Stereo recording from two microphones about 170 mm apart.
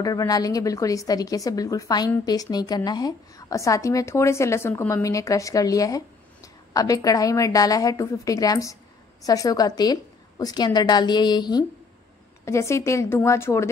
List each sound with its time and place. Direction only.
0.0 s a woman's voice: 20° left (ahead or behind)